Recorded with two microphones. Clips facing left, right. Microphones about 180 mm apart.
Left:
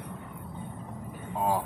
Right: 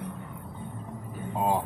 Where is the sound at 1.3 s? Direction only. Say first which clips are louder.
Right 1 dB; 20° right (ahead or behind).